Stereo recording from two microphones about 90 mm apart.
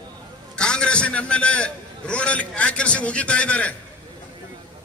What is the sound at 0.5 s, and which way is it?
A man's voice, 10° left (ahead or behind).